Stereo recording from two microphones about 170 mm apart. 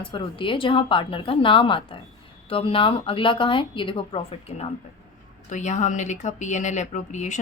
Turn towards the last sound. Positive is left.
turn(degrees=45)  # may be behind; listen again after turning